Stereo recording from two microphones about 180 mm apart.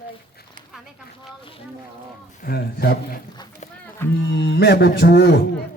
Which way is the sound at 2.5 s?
60° left (ahead or behind).